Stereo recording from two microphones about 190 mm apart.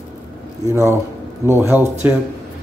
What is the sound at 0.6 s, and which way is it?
Speech, 15° right (ahead or behind).